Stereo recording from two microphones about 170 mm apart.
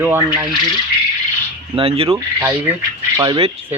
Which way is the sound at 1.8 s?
35° right (ahead or behind).